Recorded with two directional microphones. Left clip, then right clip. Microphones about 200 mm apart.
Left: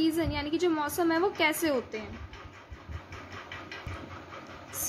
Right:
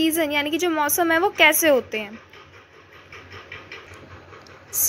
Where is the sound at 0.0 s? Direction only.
40° right (ahead or behind).